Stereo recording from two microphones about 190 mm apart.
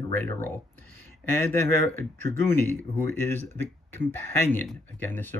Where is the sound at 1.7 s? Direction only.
10° left (ahead or behind).